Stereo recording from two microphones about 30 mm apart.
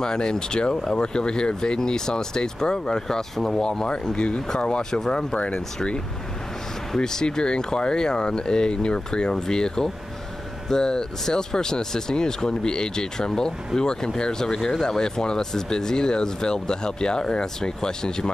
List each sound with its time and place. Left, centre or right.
0.0 s speech: left
7.0 s speech: left